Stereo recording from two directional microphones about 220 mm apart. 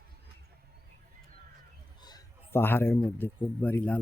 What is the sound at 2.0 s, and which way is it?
A man's voice, 20° left (ahead or behind).